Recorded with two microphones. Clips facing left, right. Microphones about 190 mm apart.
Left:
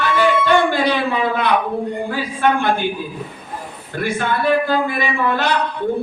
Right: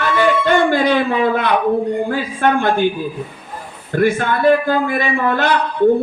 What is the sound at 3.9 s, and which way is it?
Speech, 50° right (ahead or behind).